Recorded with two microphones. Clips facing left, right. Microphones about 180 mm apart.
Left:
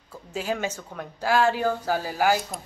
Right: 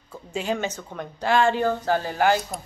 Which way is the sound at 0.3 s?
5° left (ahead or behind).